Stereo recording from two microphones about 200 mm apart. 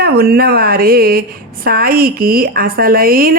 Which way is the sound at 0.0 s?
50° right (ahead or behind).